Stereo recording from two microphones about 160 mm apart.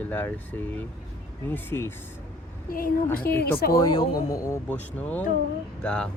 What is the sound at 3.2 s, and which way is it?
Speech, 75° left (ahead or behind).